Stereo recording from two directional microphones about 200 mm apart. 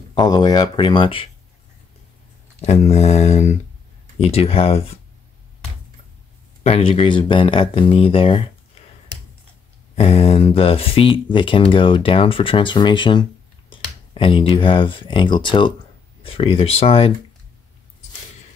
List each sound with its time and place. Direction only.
0.1 s speech: 20° left (ahead or behind)
2.6 s a sound: 35° left (ahead or behind)
4.2 s speech: 30° left (ahead or behind)
6.6 s speech: 30° left (ahead or behind)
9.9 s speech: 30° left (ahead or behind)